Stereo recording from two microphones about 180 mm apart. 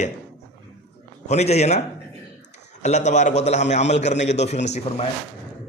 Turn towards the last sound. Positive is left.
turn(degrees=40)  # may be behind; listen again after turning